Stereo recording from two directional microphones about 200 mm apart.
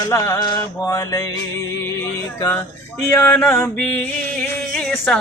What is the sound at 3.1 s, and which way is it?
Music, 10° left (ahead or behind).